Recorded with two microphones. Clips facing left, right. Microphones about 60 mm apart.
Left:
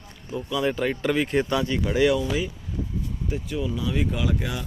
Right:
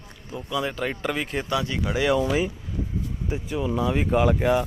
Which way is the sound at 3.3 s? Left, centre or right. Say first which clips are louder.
Right 1 dB; right.